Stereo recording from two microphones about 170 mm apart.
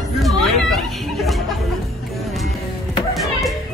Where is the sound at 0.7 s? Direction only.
Centre (ahead or behind).